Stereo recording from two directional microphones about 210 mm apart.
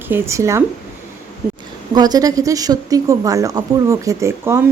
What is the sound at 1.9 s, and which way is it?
A woman's voice, 20° right (ahead or behind).